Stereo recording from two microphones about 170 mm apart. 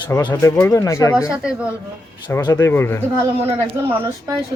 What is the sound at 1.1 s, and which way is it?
Speech, 5° right (ahead or behind).